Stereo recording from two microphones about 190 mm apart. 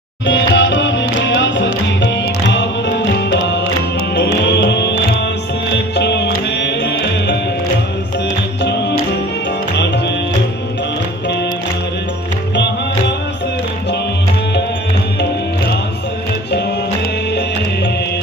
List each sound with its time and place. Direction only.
0.3 s music: 70° left (ahead or behind)